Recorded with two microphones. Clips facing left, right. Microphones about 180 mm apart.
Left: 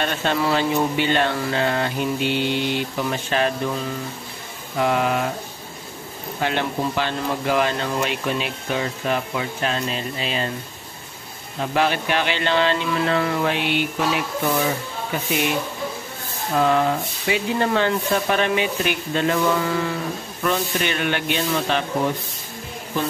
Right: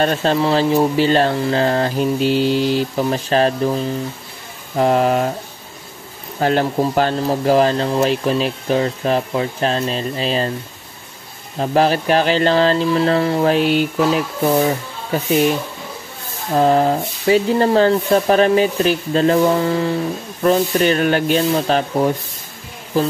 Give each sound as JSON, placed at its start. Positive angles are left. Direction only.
{"t": 0.0, "sound": "speech", "side_deg": -35}
{"t": 6.4, "sound": "speech", "side_deg": -40}
{"t": 11.6, "sound": "speech", "side_deg": -35}
{"t": 16.5, "sound": "speech", "side_deg": -35}